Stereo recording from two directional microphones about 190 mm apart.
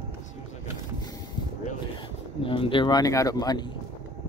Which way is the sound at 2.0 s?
25° left (ahead or behind).